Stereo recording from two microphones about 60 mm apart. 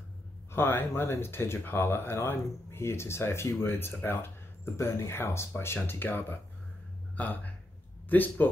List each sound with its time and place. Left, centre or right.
0.5 s speech: left
4.7 s speech: left